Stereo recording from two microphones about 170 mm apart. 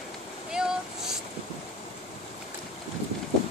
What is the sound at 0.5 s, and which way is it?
Vehicle, 5° right (ahead or behind).